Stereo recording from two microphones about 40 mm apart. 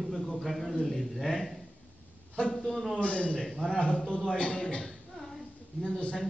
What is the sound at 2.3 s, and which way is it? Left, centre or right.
A man's voice, left.